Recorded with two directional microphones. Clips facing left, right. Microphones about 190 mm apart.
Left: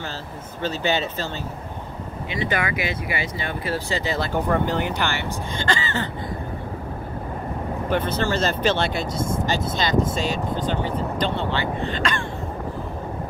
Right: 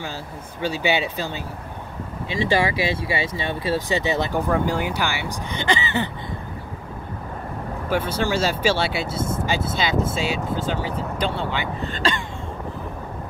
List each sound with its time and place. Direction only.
0.6 s speech: 10° right (ahead or behind)
2.2 s speech: 30° right (ahead or behind)
4.5 s speech: 10° right (ahead or behind)
7.9 s speech: 10° right (ahead or behind)
11.8 s speech: 40° right (ahead or behind)